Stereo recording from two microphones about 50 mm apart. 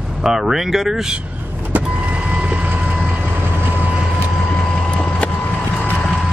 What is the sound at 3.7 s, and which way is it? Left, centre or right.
Vehicle, right.